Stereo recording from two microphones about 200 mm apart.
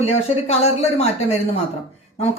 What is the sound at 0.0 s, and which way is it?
Speech, 30° left (ahead or behind).